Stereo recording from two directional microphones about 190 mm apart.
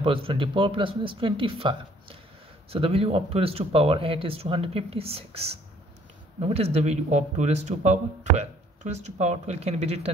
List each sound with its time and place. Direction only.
0.0 s speech: 25° right (ahead or behind)